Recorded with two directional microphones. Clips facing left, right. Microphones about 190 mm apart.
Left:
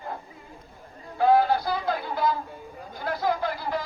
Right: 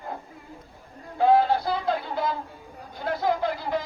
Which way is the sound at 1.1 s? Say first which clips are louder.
Even; 25° right (ahead or behind).